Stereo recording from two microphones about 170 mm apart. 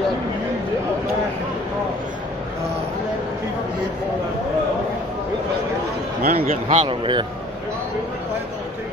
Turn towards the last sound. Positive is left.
turn(degrees=-30)  # may be behind; listen again after turning